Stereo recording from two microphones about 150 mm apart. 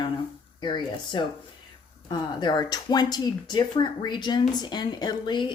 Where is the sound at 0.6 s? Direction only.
30° left (ahead or behind).